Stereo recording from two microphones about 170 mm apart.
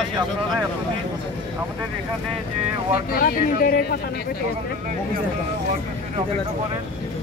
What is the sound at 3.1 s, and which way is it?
Speech, 60° left (ahead or behind).